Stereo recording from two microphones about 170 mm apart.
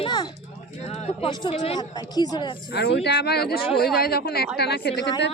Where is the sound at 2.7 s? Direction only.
75° left (ahead or behind).